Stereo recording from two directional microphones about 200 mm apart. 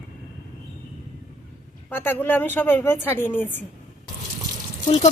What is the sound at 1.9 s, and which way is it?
Speech, 10° left (ahead or behind).